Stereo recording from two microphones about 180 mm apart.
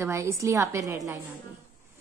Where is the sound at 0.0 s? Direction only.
15° right (ahead or behind).